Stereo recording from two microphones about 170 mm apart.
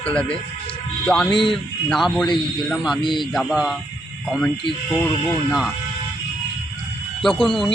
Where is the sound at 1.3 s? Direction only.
30° left (ahead or behind).